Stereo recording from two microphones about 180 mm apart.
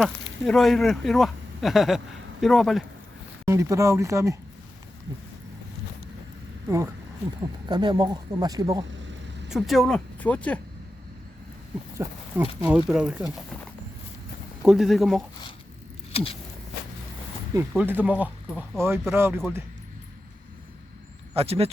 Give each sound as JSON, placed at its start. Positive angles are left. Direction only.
{"t": 0.4, "sound": "speech", "side_deg": 0}
{"t": 3.4, "sound": "speech", "side_deg": -15}
{"t": 6.7, "sound": "speech", "side_deg": -15}
{"t": 9.5, "sound": "speech", "side_deg": 0}
{"t": 11.9, "sound": "speech", "side_deg": -10}
{"t": 14.6, "sound": "speech", "side_deg": 0}
{"t": 16.1, "sound": "walk", "side_deg": 35}
{"t": 17.5, "sound": "speech", "side_deg": -10}
{"t": 21.3, "sound": "speech", "side_deg": -35}